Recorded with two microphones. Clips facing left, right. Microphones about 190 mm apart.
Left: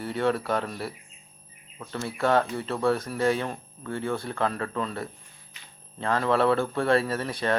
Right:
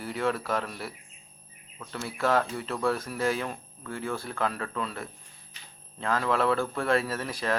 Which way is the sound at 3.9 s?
30° left (ahead or behind).